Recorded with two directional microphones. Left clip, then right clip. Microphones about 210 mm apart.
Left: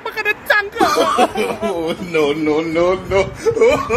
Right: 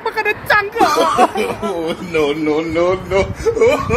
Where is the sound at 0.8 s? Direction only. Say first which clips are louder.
Right 2 dB; centre (ahead or behind).